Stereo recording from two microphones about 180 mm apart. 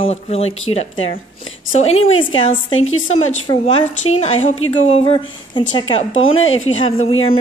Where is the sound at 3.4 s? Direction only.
35° left (ahead or behind).